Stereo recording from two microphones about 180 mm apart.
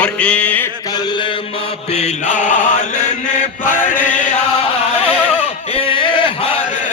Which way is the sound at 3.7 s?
50° left (ahead or behind).